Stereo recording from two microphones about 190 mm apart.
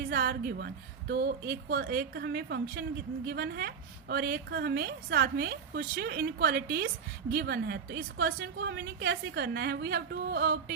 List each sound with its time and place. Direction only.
0.0 s a woman's voice: 55° right (ahead or behind)